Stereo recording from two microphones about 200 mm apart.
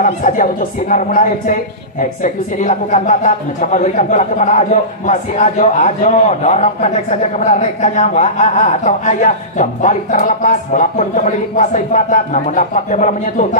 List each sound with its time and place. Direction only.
0.0 s a woman's voice: 40° left (ahead or behind)